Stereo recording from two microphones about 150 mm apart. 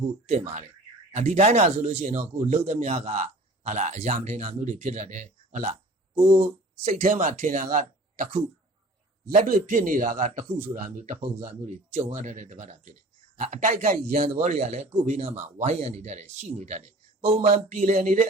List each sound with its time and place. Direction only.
0.0 s a man's voice: 45° right (ahead or behind)
6.1 s speech: 65° right (ahead or behind)
9.2 s a man's voice: 70° right (ahead or behind); by 18.3 s 45° right (ahead or behind)